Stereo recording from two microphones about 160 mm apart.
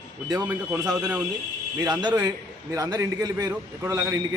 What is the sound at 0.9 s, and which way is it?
A man's voice, 25° right (ahead or behind).